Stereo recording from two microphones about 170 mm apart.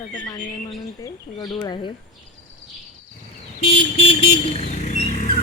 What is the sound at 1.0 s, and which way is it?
Speech, 20° left (ahead or behind).